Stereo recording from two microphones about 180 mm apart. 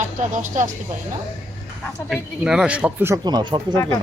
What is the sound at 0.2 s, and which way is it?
Speech, 45° right (ahead or behind).